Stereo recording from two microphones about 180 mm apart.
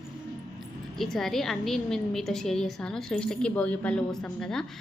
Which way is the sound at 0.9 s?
Centre (ahead or behind).